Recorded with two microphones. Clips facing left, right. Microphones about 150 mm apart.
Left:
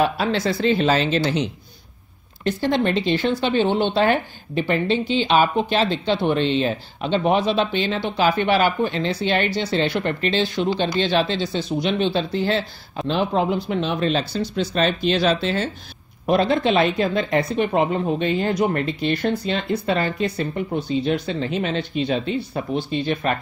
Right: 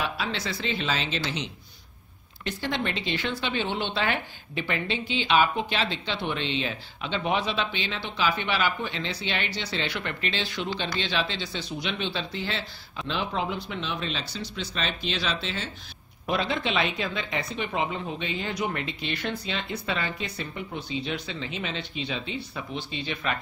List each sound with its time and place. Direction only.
0.0 s speech: 45° left (ahead or behind)